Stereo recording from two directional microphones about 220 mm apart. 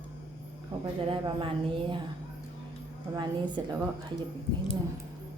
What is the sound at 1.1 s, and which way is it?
Speech, 25° right (ahead or behind).